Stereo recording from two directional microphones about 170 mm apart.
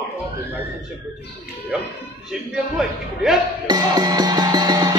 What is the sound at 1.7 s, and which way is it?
A man's voice, 5° right (ahead or behind).